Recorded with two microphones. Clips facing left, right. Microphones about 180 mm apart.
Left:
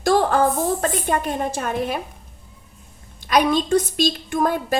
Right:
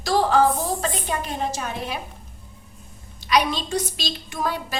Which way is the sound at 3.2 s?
50° left (ahead or behind).